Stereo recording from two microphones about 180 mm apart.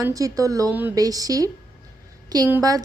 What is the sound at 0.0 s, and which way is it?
A woman's voice, 20° right (ahead or behind).